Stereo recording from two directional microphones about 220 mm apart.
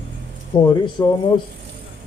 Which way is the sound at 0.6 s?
15° left (ahead or behind).